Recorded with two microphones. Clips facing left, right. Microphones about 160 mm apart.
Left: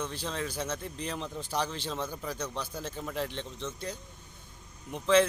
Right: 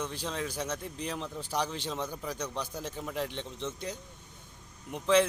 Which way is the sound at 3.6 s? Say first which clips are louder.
Right 1 dB; 20° right (ahead or behind).